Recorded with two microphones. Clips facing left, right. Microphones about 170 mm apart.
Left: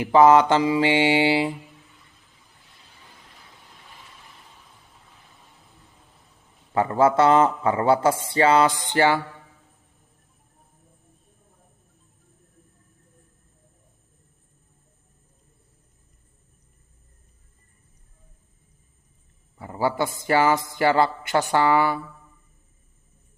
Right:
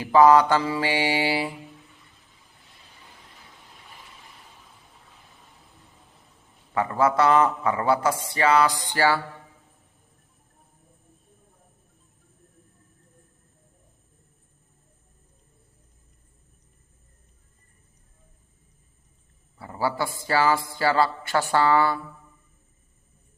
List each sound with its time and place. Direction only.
0.0 s a man's voice: 20° left (ahead or behind)
6.7 s a man's voice: 30° left (ahead or behind)
19.5 s a man's voice: 20° left (ahead or behind)